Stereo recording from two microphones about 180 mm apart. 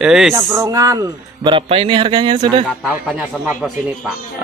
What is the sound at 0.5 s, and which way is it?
Speech, 20° right (ahead or behind).